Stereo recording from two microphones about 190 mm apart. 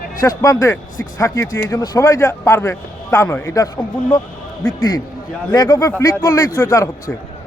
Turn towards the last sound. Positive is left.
turn(degrees=15)  # may be behind; listen again after turning